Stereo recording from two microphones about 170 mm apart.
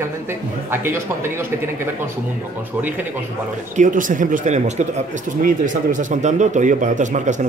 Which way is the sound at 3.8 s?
50° right (ahead or behind).